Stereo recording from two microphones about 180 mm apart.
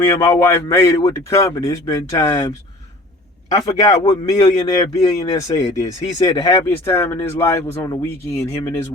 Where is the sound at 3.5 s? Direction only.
20° left (ahead or behind).